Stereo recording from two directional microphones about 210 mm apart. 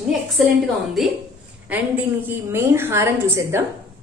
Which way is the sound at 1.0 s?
Centre (ahead or behind).